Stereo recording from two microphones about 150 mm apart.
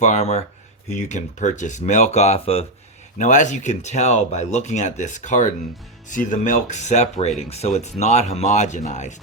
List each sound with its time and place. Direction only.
0.0 s speech: 50° left (ahead or behind)
3.2 s speech: 55° left (ahead or behind)